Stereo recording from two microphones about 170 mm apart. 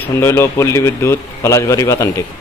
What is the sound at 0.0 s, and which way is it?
Speech, 15° left (ahead or behind).